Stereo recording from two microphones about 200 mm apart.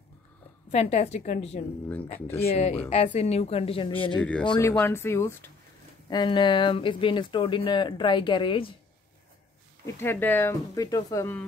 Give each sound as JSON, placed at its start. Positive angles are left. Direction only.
{"t": 0.7, "sound": "a woman's voice", "side_deg": 35}
{"t": 2.1, "sound": "speech", "side_deg": 10}
{"t": 2.4, "sound": "a woman's voice", "side_deg": 30}
{"t": 4.2, "sound": "speech", "side_deg": 5}
{"t": 6.0, "sound": "speech", "side_deg": 20}
{"t": 9.9, "sound": "speech", "side_deg": 10}